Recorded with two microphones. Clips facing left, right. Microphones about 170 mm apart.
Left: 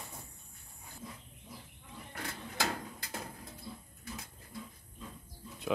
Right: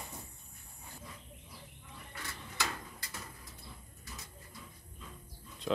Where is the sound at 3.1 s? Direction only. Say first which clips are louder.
Left 8 dB; 55° left (ahead or behind).